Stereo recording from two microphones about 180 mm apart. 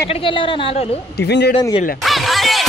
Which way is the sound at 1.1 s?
65° left (ahead or behind).